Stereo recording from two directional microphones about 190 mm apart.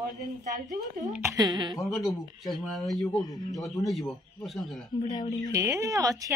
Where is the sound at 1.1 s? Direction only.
15° right (ahead or behind).